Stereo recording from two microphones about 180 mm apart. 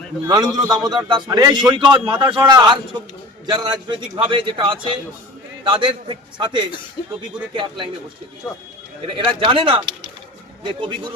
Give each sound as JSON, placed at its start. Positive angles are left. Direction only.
{"t": 0.3, "sound": "a man's voice", "side_deg": -20}
{"t": 9.1, "sound": "a man's voice", "side_deg": -30}